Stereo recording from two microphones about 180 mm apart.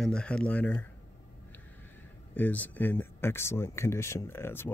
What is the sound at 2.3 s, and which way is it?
Speech, 10° left (ahead or behind).